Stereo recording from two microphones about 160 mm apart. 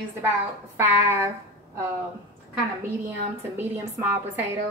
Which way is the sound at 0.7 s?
15° right (ahead or behind).